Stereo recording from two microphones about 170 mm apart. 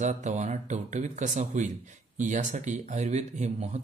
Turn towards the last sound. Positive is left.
turn(degrees=-40)  # may be behind; listen again after turning